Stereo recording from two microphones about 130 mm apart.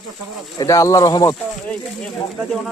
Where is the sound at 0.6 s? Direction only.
25° left (ahead or behind).